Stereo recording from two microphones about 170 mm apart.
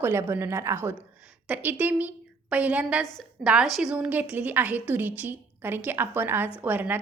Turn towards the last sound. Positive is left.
turn(degrees=-10)  # may be behind; listen again after turning